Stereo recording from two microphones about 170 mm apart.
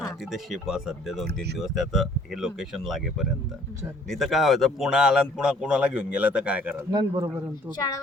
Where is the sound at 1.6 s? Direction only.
Centre (ahead or behind).